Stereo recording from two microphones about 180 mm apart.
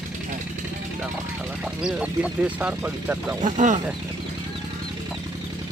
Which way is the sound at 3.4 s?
45° right (ahead or behind).